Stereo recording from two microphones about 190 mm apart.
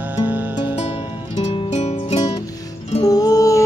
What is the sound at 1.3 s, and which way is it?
Music, 30° left (ahead or behind).